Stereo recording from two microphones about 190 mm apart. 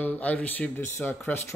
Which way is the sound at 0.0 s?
10° left (ahead or behind).